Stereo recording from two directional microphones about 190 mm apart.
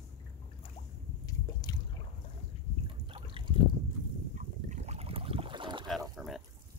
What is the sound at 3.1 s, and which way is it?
Trickle, 25° right (ahead or behind).